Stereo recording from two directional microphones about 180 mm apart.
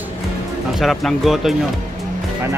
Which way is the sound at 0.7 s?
Centre (ahead or behind).